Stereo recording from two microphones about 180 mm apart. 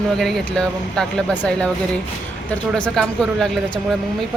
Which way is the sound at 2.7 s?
Centre (ahead or behind).